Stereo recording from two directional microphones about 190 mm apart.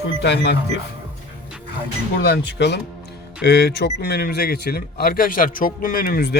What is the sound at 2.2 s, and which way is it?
Speech, 65° left (ahead or behind).